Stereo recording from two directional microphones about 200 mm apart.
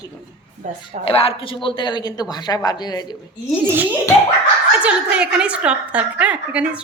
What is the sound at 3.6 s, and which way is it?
A child's voice, 10° right (ahead or behind).